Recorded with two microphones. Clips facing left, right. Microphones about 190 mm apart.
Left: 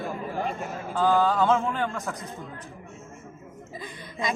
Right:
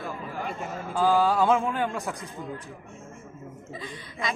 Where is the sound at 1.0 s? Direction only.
10° right (ahead or behind).